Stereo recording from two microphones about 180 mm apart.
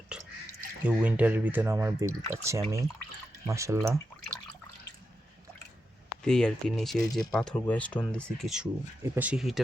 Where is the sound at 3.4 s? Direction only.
15° right (ahead or behind).